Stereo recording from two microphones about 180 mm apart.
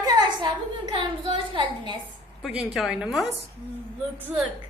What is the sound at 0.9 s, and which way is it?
A woman's voice, 25° right (ahead or behind).